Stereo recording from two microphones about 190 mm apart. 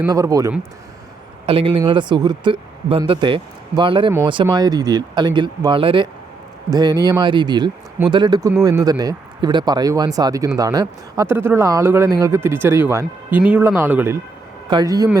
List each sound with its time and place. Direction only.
0.0 s speech: 20° right (ahead or behind)
1.5 s speech: 30° right (ahead or behind)